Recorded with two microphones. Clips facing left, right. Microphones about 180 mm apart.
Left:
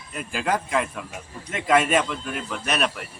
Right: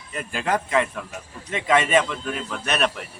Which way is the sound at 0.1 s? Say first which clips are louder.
Right 1 dB; centre (ahead or behind).